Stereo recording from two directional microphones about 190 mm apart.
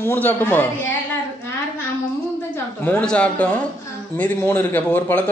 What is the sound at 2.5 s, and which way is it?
Speech, 10° left (ahead or behind).